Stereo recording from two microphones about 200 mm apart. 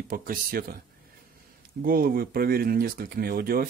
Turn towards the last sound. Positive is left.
turn(degrees=-45)  # may be behind; listen again after turning